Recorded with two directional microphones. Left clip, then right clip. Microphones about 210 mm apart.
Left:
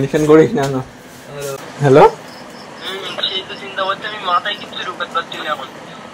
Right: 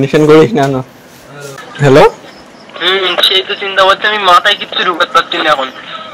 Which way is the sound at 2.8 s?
60° right (ahead or behind).